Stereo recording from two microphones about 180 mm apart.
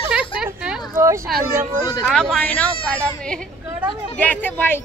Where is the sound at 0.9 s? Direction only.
15° right (ahead or behind).